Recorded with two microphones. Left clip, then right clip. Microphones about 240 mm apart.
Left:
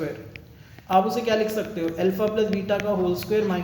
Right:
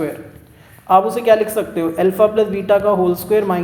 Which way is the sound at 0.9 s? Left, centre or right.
Right.